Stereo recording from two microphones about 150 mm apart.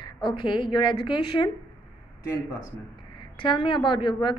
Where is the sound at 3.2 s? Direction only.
35° left (ahead or behind).